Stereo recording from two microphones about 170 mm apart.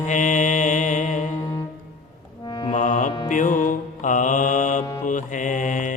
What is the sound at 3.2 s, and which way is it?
Music, 50° left (ahead or behind).